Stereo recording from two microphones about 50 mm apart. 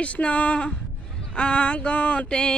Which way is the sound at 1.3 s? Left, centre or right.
Centre.